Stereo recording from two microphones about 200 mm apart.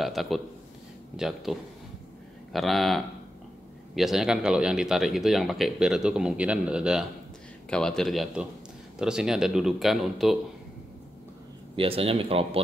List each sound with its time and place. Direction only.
0.0 s speech: centre (ahead or behind)
11.7 s speech: 30° right (ahead or behind)